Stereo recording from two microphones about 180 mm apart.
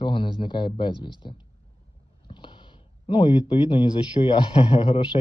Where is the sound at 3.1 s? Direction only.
25° left (ahead or behind).